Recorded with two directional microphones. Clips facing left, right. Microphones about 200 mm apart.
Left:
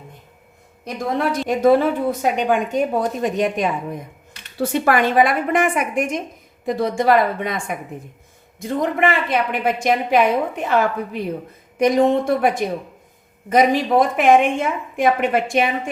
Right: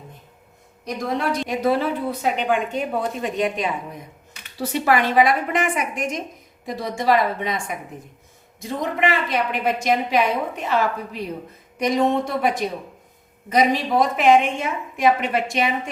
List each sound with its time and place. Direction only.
1.2 s a woman's voice: 50° left (ahead or behind)